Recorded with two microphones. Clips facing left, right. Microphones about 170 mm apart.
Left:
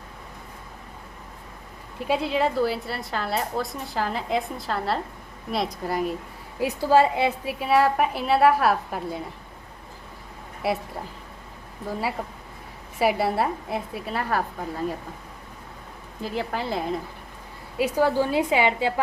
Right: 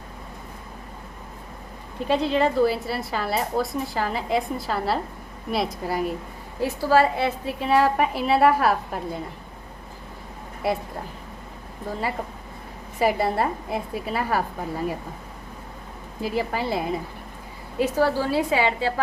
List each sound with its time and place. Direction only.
2.0 s a woman's voice: 5° left (ahead or behind)
6.6 s a woman's voice: 15° left (ahead or behind)
7.6 s a woman's voice: centre (ahead or behind)
10.6 s a woman's voice: 5° left (ahead or behind)
13.0 s a woman's voice: 5° left (ahead or behind)
16.2 s a woman's voice: 5° right (ahead or behind)
17.7 s a woman's voice: 10° left (ahead or behind)